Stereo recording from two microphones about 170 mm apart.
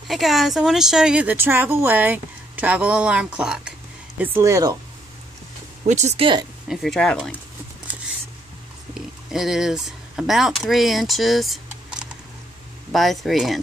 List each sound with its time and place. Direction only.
0.1 s speech: centre (ahead or behind); by 4.7 s 20° right (ahead or behind)
5.9 s speech: 40° right (ahead or behind)
6.7 s speech: centre (ahead or behind)
9.3 s speech: 5° right (ahead or behind)